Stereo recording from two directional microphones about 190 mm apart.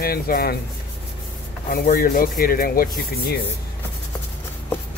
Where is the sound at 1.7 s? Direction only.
45° left (ahead or behind).